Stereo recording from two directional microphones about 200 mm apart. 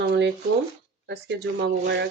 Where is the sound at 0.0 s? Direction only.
55° right (ahead or behind).